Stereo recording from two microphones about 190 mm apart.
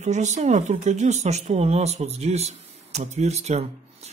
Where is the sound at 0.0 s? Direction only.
40° right (ahead or behind).